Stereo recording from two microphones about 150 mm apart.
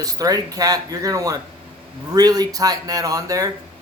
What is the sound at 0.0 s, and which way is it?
Speech, 25° right (ahead or behind).